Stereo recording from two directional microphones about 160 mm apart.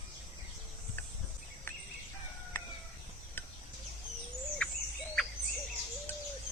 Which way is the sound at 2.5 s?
10° left (ahead or behind).